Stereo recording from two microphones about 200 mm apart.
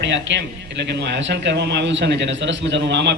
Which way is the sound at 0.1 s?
65° right (ahead or behind).